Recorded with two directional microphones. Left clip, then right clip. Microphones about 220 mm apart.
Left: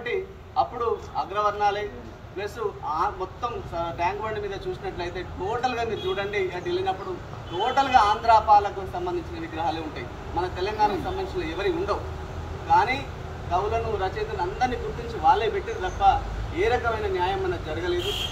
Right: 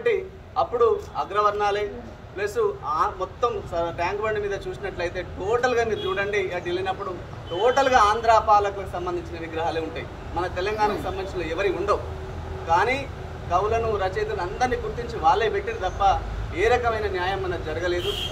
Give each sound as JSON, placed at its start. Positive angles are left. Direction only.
{"t": 0.0, "sound": "a man's voice", "side_deg": -15}